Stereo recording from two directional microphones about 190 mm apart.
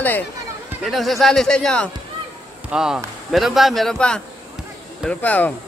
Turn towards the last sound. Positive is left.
turn(degrees=10)  # may be behind; listen again after turning